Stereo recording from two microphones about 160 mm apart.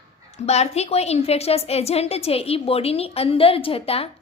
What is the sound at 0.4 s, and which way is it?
A woman's voice, 40° left (ahead or behind).